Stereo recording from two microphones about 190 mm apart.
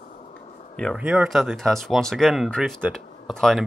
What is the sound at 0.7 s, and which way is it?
Speech, 5° left (ahead or behind).